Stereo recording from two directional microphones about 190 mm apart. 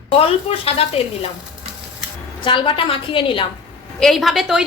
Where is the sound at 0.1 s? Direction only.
30° left (ahead or behind).